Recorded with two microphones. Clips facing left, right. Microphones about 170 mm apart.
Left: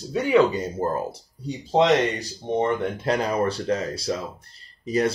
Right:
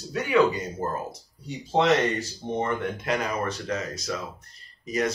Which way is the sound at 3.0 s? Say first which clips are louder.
Left 5 dB; 30° left (ahead or behind).